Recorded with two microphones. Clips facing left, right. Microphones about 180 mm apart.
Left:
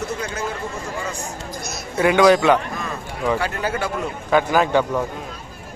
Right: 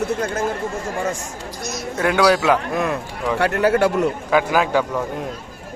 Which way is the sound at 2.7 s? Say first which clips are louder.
Right 7 dB; 65° right (ahead or behind).